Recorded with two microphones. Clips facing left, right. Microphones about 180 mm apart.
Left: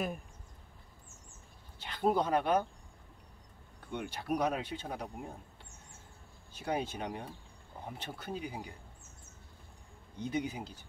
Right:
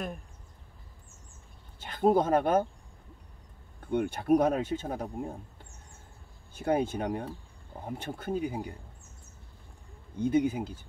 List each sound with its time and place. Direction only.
1.8 s speech: 50° right (ahead or behind)
3.9 s speech: 50° right (ahead or behind)
6.5 s speech: 50° right (ahead or behind)
10.1 s speech: 50° right (ahead or behind)